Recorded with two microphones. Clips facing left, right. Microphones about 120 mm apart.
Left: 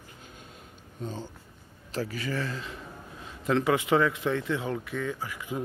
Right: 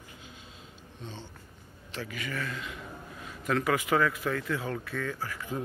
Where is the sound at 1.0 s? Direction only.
40° left (ahead or behind).